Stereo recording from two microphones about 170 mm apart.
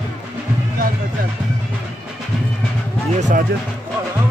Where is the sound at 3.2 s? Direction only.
45° right (ahead or behind).